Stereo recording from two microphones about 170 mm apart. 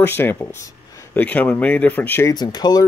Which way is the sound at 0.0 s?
15° left (ahead or behind).